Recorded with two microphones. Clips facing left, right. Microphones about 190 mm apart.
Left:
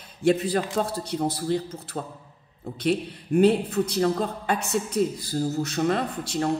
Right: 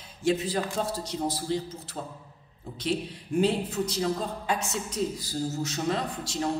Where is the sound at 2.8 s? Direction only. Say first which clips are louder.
Left 5 dB; 60° left (ahead or behind).